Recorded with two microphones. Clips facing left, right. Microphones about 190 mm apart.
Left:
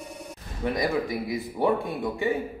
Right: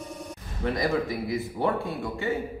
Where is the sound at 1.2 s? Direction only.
15° left (ahead or behind).